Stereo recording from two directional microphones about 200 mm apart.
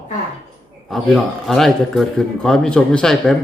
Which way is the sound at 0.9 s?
Centre (ahead or behind).